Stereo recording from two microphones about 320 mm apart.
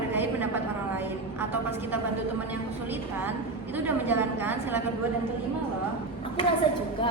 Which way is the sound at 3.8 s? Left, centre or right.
Centre.